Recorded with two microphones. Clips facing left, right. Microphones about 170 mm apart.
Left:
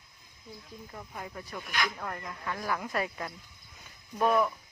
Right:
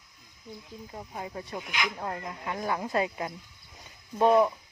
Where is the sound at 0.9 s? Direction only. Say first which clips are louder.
Right 4 dB; 20° right (ahead or behind).